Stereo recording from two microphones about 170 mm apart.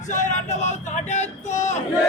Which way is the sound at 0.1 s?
45° left (ahead or behind).